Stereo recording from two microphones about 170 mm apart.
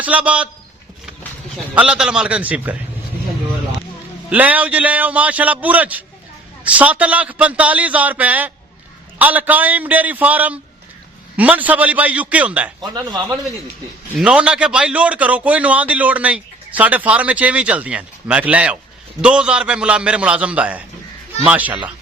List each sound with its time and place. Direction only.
0.0 s a man's voice: 10° right (ahead or behind)
1.7 s a man's voice: 5° right (ahead or behind)
4.3 s a man's voice: 10° right (ahead or behind)
12.8 s a man's voice: 25° right (ahead or behind)
14.2 s a man's voice: 5° right (ahead or behind)